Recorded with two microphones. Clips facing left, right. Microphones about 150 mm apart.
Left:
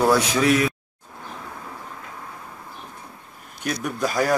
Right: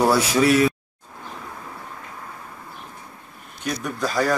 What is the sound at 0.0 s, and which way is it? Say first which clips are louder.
Speech: right 1 dB; 10° right (ahead or behind).